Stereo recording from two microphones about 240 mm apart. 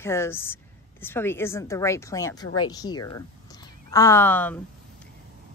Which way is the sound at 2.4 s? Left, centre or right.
Left.